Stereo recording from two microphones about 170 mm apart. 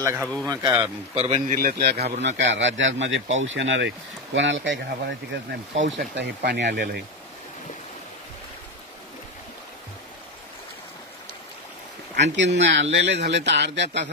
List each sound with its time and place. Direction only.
0.0 s speech: 15° right (ahead or behind)
1.1 s speech: 40° right (ahead or behind)
1.6 s a man's voice: 60° right (ahead or behind)
2.0 s speech: 40° right (ahead or behind)
2.5 s speech: 90° right; by 7.0 s 75° right (ahead or behind)
12.2 s speech: 90° right